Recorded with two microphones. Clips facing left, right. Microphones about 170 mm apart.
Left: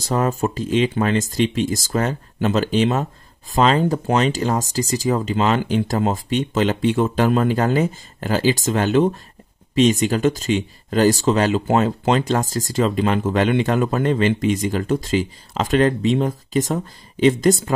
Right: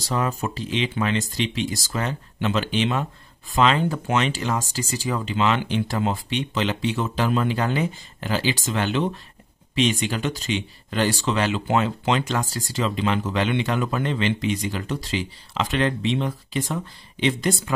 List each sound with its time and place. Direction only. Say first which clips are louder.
0.0 s speech: left 5 dB; 45° left (ahead or behind)